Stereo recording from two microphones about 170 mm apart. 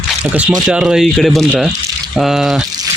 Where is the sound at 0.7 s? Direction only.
5° right (ahead or behind).